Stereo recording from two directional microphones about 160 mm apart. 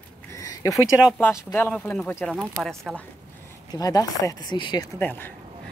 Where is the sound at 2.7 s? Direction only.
15° right (ahead or behind).